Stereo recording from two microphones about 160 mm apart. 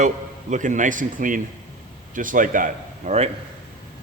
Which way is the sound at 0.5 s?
50° right (ahead or behind).